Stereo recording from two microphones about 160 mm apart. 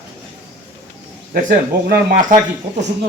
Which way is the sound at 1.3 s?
65° right (ahead or behind).